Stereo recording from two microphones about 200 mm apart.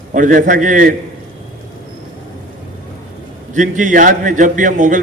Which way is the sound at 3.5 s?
40° right (ahead or behind).